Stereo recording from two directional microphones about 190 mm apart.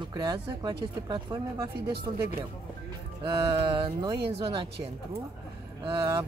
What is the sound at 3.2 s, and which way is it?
Speech, 20° right (ahead or behind).